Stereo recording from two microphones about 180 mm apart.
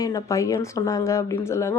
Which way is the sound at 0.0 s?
20° left (ahead or behind).